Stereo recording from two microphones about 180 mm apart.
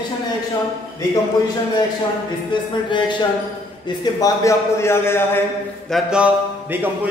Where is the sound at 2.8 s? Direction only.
25° left (ahead or behind).